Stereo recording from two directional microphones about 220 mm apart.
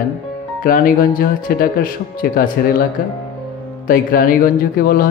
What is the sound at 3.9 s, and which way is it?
Speech, 40° left (ahead or behind).